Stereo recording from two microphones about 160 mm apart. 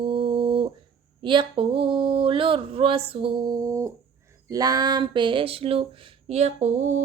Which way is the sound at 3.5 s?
20° right (ahead or behind).